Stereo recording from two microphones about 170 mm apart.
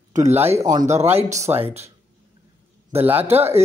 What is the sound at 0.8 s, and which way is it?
Speech, 40° right (ahead or behind).